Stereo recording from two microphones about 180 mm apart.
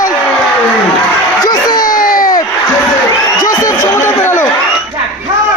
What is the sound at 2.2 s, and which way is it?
Crowd, 20° left (ahead or behind).